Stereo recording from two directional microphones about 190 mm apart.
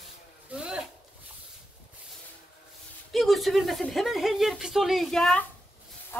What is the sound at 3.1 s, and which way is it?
Speech, centre (ahead or behind).